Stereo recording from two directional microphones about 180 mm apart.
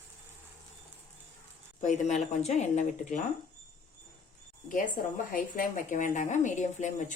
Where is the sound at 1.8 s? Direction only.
40° left (ahead or behind).